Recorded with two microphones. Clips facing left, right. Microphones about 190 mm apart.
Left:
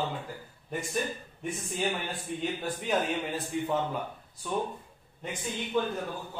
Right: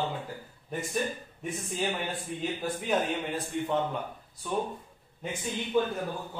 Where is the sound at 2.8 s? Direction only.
Centre (ahead or behind).